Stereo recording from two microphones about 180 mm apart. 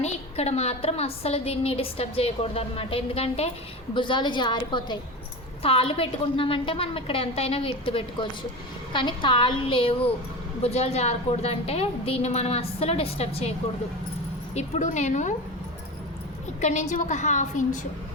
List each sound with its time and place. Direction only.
0.0 s a woman's voice: 35° left (ahead or behind)
14.5 s a woman's voice: 40° left (ahead or behind)
16.6 s a woman's voice: 40° left (ahead or behind)